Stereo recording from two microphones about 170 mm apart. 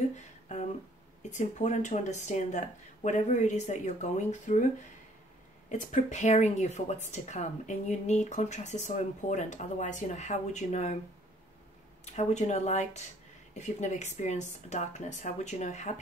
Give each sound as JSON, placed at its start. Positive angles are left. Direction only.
{"t": 0.5, "sound": "a sound", "side_deg": 45}
{"t": 1.3, "sound": "speech", "side_deg": 45}
{"t": 5.7, "sound": "speech", "side_deg": 45}
{"t": 12.0, "sound": "speech", "side_deg": 40}